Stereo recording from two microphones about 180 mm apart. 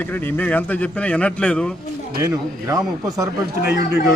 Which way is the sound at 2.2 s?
20° right (ahead or behind).